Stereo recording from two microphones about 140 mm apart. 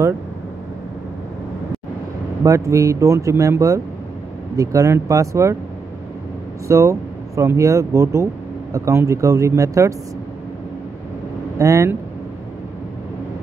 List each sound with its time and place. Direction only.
2.4 s speech: 20° right (ahead or behind)
6.7 s speech: 20° right (ahead or behind)
11.5 s speech: 25° right (ahead or behind)